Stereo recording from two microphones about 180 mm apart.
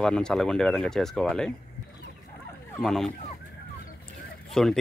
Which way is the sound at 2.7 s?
Centre (ahead or behind).